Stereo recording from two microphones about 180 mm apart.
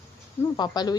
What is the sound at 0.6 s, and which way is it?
Speech, 20° left (ahead or behind).